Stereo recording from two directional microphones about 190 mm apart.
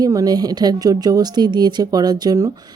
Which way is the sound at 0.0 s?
20° right (ahead or behind).